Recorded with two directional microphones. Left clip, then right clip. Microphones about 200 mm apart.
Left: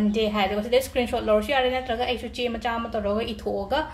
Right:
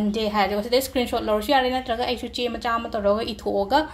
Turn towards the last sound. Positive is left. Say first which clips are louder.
# right 5 dB
turn(degrees=-30)  # may be behind; listen again after turning